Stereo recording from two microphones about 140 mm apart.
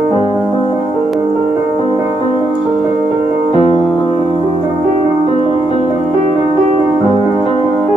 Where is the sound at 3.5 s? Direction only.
50° left (ahead or behind).